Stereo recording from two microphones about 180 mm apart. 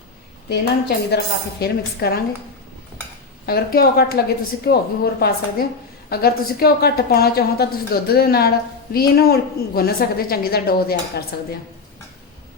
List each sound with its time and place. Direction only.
0.4 s a woman's voice: 65° left (ahead or behind)
3.4 s a woman's voice: 60° left (ahead or behind)